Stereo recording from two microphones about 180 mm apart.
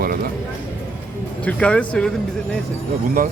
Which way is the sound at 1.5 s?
5° left (ahead or behind).